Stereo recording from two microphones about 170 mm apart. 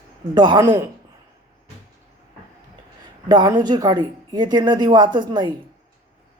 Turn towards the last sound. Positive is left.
turn(degrees=-25)  # may be behind; listen again after turning